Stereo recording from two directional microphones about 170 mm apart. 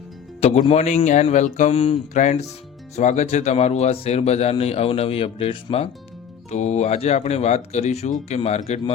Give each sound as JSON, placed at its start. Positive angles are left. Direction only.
{"t": 0.3, "sound": "music", "side_deg": 35}
{"t": 0.7, "sound": "speech", "side_deg": 40}